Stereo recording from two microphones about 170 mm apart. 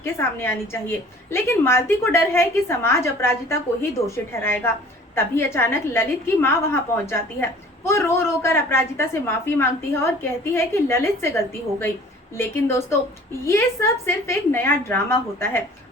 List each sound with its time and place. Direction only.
0.0 s a woman's voice: 15° left (ahead or behind)